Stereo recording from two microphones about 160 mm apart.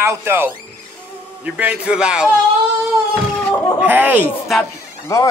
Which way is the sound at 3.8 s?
10° right (ahead or behind).